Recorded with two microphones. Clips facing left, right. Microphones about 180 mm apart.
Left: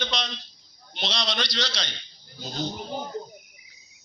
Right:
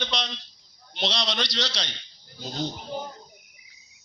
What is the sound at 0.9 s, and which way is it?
Speech, 5° left (ahead or behind).